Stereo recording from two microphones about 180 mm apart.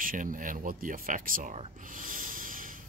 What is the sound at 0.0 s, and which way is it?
Speech, 50° right (ahead or behind).